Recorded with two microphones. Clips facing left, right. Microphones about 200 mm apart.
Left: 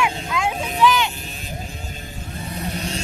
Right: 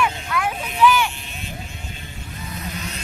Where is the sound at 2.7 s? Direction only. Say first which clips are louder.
Left 5 dB; 30° left (ahead or behind).